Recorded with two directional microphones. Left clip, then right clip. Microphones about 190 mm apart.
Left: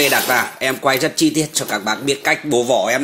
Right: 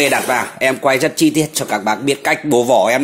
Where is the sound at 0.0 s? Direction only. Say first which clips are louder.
Right 1 dB; 10° right (ahead or behind).